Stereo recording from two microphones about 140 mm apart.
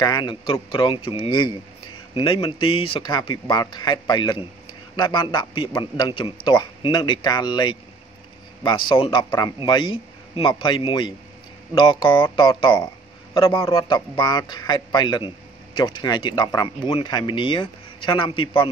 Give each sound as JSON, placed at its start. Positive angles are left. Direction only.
{"t": 0.0, "sound": "a man's voice", "side_deg": 30}